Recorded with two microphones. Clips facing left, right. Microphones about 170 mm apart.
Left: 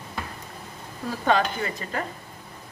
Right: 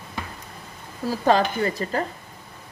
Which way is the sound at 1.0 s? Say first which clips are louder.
Right 3 dB; 35° right (ahead or behind).